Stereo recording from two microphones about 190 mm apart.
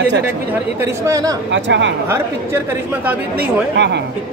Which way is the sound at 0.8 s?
15° right (ahead or behind).